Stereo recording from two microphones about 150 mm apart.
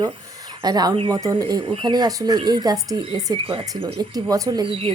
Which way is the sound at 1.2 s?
25° right (ahead or behind).